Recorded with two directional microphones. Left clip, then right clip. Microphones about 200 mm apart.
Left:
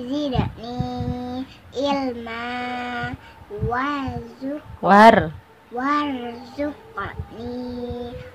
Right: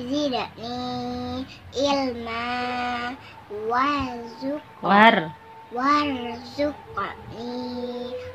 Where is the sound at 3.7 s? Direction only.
5° left (ahead or behind).